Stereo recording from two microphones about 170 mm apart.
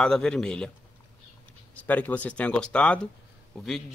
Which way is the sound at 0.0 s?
5° left (ahead or behind).